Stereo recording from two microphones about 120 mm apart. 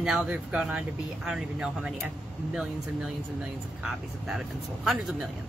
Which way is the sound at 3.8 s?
Centre (ahead or behind).